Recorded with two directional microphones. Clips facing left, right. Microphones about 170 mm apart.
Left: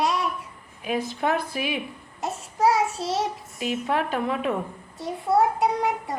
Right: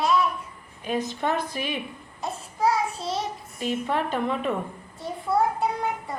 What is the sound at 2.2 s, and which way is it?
Child singing, 80° left.